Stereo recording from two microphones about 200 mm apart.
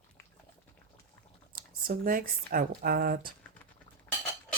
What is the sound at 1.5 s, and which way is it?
Speech, 45° right (ahead or behind).